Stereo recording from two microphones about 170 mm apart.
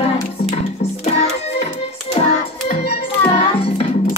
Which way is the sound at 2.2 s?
40° left (ahead or behind).